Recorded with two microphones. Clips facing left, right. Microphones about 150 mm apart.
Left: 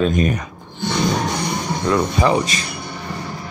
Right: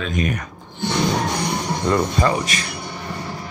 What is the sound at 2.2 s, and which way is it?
Speech, 20° left (ahead or behind).